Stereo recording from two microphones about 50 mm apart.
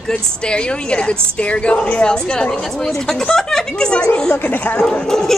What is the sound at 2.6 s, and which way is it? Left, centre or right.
Speech, centre.